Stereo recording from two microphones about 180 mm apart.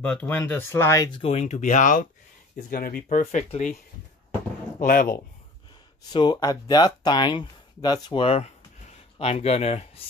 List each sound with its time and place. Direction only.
0.0 s speech: 5° left (ahead or behind)
1.2 s speech: 35° left (ahead or behind)
4.7 s speech: 50° left (ahead or behind)
6.1 s speech: 20° left (ahead or behind)